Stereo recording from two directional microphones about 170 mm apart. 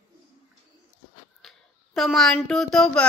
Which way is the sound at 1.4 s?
Centre (ahead or behind).